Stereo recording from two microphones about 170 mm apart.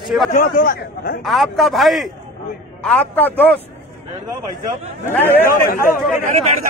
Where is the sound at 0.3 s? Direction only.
55° left (ahead or behind).